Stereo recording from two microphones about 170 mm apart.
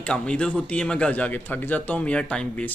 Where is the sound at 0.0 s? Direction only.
5° left (ahead or behind).